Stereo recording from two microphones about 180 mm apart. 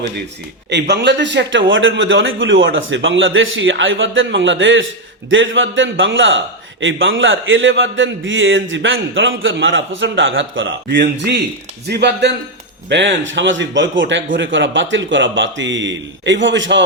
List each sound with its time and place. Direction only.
0.7 s a man's voice: 70° right (ahead or behind)
12.9 s a man's voice: 90° right